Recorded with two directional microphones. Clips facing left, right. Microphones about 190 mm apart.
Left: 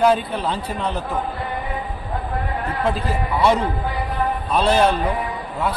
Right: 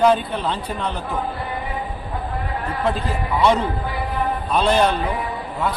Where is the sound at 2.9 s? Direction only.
5° left (ahead or behind).